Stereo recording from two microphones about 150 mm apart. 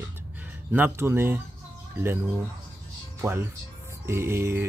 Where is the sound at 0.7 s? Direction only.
15° right (ahead or behind).